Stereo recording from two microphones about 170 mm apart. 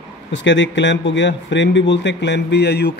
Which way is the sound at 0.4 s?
90° left.